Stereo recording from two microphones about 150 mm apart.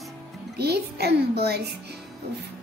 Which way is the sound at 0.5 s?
90° right.